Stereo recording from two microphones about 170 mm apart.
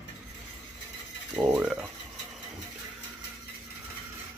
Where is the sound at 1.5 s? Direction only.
10° right (ahead or behind).